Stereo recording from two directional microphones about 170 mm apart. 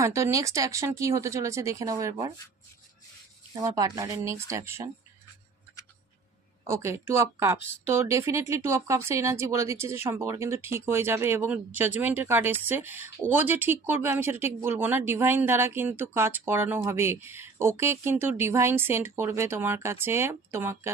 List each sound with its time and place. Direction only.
0.0 s speech: 15° right (ahead or behind)
3.5 s speech: 20° right (ahead or behind)
6.7 s speech: 15° right (ahead or behind)